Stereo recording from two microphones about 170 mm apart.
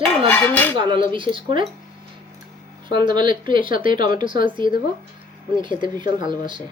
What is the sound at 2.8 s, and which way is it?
Speech, 25° right (ahead or behind).